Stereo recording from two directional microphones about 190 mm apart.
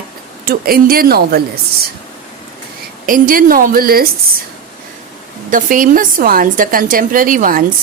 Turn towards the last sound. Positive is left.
turn(degrees=-45)  # may be behind; listen again after turning